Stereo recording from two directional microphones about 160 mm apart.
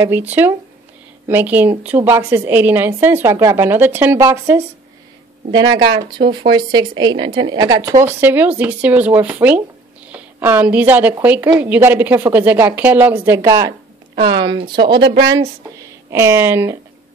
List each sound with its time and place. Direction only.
0.0 s a woman's voice: 10° right (ahead or behind)
5.5 s a woman's voice: 30° right (ahead or behind)
14.1 s speech: 30° right (ahead or behind); by 16.7 s 15° right (ahead or behind)